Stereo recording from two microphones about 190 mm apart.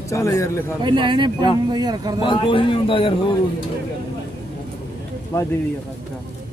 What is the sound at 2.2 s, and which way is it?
Speech, 25° left (ahead or behind).